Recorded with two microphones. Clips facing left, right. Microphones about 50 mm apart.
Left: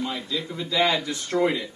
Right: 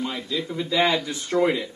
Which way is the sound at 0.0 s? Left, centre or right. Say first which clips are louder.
Right 1 dB; centre.